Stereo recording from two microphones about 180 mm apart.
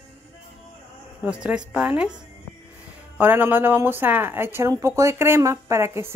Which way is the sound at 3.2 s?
10° right (ahead or behind).